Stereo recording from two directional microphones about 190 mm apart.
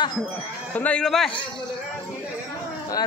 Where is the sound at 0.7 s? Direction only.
5° left (ahead or behind).